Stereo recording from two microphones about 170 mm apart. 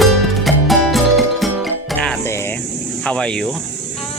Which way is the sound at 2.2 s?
15° left (ahead or behind).